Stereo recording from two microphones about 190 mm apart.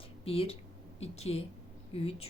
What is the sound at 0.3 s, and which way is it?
A woman's voice, 30° left (ahead or behind).